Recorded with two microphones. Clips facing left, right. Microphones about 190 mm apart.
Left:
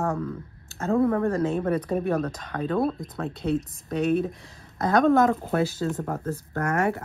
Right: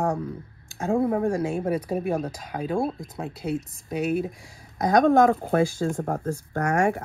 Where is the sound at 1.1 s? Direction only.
15° right (ahead or behind).